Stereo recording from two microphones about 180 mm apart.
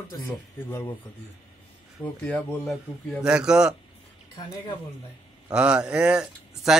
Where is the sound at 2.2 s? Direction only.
5° left (ahead or behind).